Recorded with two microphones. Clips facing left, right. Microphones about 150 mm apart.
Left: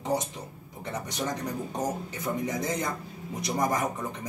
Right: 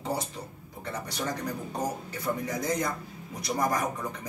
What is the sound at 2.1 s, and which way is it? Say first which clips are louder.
Speech: left 1 dB; 20° left (ahead or behind).